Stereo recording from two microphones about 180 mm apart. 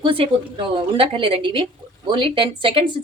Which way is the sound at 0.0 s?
30° right (ahead or behind).